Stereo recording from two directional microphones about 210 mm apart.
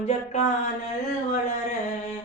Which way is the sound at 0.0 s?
30° left (ahead or behind).